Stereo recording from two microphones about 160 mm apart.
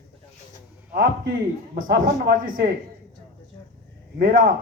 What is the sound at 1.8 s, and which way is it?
Speech, 65° right (ahead or behind).